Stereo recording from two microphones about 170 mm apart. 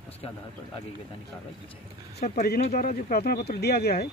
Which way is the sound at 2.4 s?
60° left (ahead or behind).